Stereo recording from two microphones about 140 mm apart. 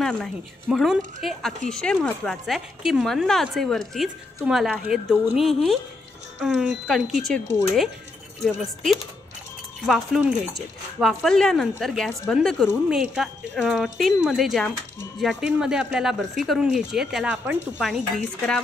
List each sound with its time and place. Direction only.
0.0 s speech: 5° left (ahead or behind)
8.5 s speech: centre (ahead or behind)